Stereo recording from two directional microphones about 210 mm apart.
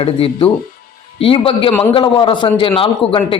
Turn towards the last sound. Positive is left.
turn(degrees=25)  # may be behind; listen again after turning